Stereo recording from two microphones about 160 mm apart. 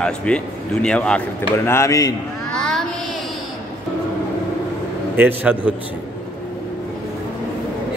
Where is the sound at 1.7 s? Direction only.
20° left (ahead or behind).